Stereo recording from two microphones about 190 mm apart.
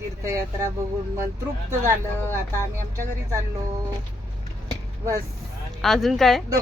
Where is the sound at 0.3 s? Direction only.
15° right (ahead or behind).